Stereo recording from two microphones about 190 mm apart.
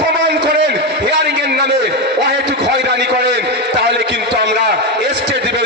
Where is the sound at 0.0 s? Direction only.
60° right (ahead or behind).